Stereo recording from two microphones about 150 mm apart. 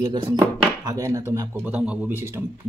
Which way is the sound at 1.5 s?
10° right (ahead or behind).